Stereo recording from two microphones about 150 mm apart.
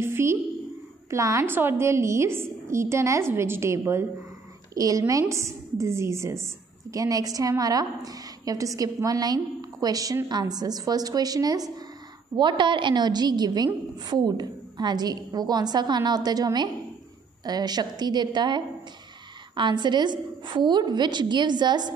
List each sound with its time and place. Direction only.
0.0 s a woman's voice: 15° right (ahead or behind)